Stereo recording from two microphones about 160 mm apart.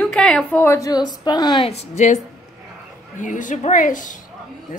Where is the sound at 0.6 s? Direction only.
20° left (ahead or behind).